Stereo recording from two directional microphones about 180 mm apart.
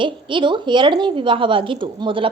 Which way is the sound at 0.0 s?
25° right (ahead or behind).